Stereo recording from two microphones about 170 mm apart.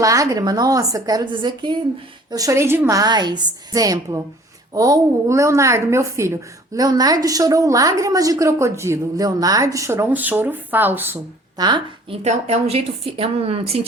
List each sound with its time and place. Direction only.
0.0 s a woman's voice: 20° right (ahead or behind)
11.5 s a woman's voice: 25° right (ahead or behind)
12.2 s a woman's voice: 40° right (ahead or behind)